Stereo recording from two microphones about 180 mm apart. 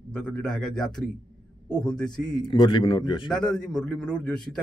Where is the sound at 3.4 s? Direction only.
5° left (ahead or behind).